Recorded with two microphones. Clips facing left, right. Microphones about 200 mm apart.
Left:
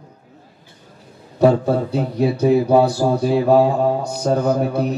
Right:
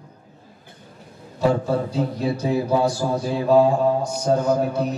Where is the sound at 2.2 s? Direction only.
60° left (ahead or behind).